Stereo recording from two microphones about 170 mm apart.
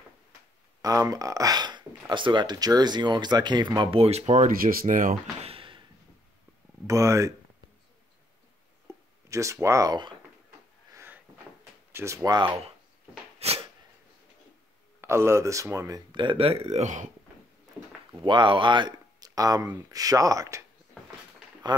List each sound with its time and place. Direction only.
0.8 s speech: 20° right (ahead or behind); by 5.1 s 50° right (ahead or behind)
5.4 s a sound: 35° right (ahead or behind)
6.9 s speech: 20° right (ahead or behind)
9.3 s speech: 15° right (ahead or behind)
10.9 s a sound: 15° right (ahead or behind)
11.9 s speech: 15° right (ahead or behind)
13.4 s a sound: 35° right (ahead or behind)
15.0 s speech: 15° right (ahead or behind); by 17.1 s 45° right (ahead or behind)
18.2 s speech: 30° right (ahead or behind)
21.6 s speech: 25° right (ahead or behind)